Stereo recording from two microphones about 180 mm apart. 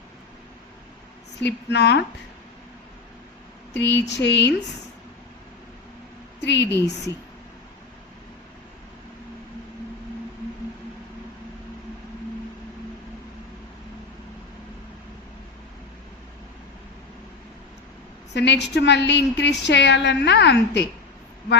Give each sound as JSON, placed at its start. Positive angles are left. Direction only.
{"t": 1.4, "sound": "speech", "side_deg": 70}
{"t": 3.8, "sound": "speech", "side_deg": 75}
{"t": 6.4, "sound": "speech", "side_deg": 75}
{"t": 18.3, "sound": "speech", "side_deg": 70}